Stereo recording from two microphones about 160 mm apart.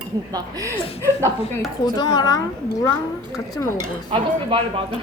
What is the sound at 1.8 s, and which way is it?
A woman's voice, 25° left (ahead or behind).